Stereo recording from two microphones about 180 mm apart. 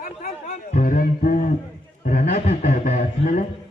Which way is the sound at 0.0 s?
45° left (ahead or behind).